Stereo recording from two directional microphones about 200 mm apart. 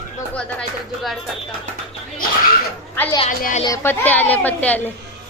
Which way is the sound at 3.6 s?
15° left (ahead or behind).